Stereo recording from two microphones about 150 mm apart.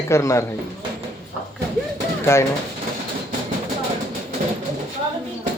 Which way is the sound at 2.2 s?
15° left (ahead or behind).